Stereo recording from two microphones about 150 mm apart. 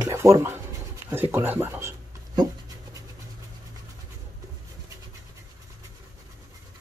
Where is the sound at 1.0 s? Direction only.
15° right (ahead or behind).